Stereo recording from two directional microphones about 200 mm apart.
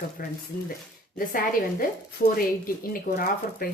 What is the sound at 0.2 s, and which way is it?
Speech, 50° left (ahead or behind).